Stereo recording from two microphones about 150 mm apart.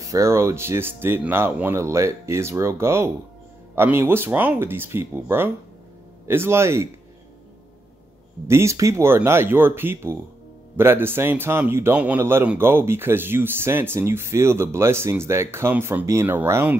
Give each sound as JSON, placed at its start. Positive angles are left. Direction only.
{"t": 0.0, "sound": "speech", "side_deg": -20}
{"t": 8.5, "sound": "speech", "side_deg": -20}